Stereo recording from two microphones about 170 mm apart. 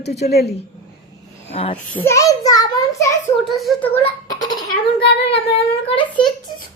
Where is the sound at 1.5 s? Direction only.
35° left (ahead or behind).